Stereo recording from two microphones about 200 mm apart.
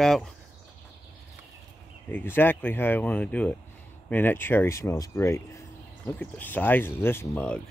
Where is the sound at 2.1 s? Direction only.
10° left (ahead or behind).